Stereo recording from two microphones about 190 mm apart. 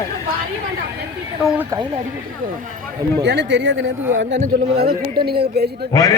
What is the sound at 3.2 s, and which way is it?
Speech, 65° right (ahead or behind).